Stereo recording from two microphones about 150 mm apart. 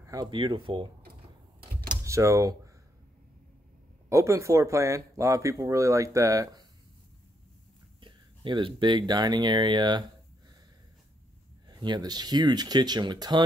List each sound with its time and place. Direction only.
0.0 s speech: 25° right (ahead or behind)
2.0 s speech: 20° right (ahead or behind)
4.1 s speech: 20° right (ahead or behind)
8.0 s speech: 35° right (ahead or behind)
11.7 s speech: 30° right (ahead or behind)